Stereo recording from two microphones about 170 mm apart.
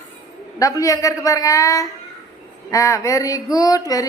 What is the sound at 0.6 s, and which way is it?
A woman's voice, 20° left (ahead or behind).